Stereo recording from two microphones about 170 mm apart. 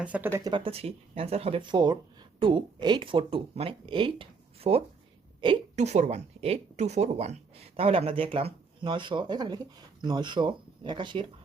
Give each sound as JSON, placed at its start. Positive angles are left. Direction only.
{"t": 0.0, "sound": "speech", "side_deg": -10}
{"t": 0.5, "sound": "speech", "side_deg": -35}